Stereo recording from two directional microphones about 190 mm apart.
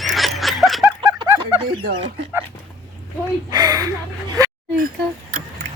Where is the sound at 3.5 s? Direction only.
20° right (ahead or behind).